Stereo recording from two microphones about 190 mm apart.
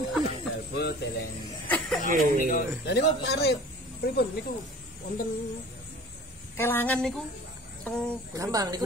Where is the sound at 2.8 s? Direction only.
65° left (ahead or behind).